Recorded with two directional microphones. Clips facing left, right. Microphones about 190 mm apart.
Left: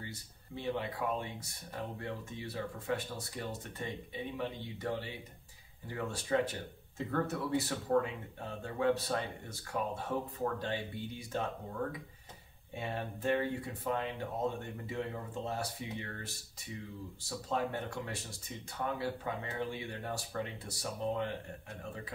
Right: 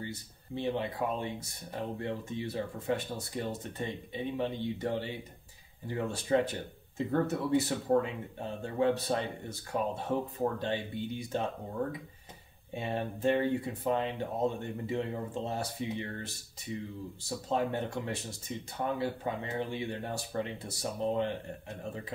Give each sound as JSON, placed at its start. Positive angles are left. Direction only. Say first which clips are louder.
{"t": 0.0, "sound": "speech", "louder": "right 6 dB", "side_deg": -25}
{"t": 12.7, "sound": "speech", "louder": "right 5 dB", "side_deg": -25}
{"t": 17.5, "sound": "speech", "louder": "right 4 dB", "side_deg": -25}